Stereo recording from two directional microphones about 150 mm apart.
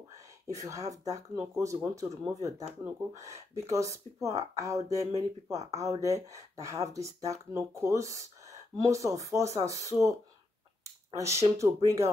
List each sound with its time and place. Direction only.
0.1 s speech: 20° right (ahead or behind)
11.1 s speech: 20° right (ahead or behind)